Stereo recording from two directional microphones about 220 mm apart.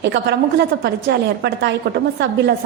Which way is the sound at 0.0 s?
50° right (ahead or behind).